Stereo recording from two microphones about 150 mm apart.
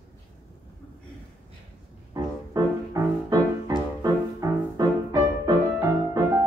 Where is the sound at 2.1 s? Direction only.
25° right (ahead or behind).